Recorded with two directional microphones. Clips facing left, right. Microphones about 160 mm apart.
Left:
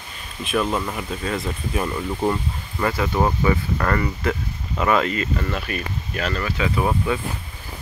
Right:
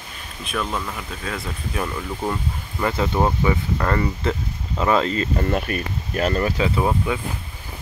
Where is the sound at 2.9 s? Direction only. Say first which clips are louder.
Right 3 dB; 25° right (ahead or behind).